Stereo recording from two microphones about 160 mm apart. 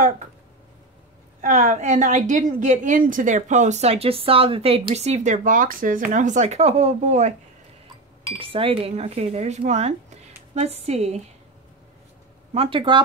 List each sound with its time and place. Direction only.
1.4 s a woman's voice: 50° right (ahead or behind)
8.4 s a woman's voice: 35° right (ahead or behind)
12.5 s speech: 35° right (ahead or behind)